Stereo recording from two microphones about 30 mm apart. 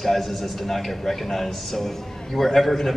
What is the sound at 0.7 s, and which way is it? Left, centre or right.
A man's voice, centre.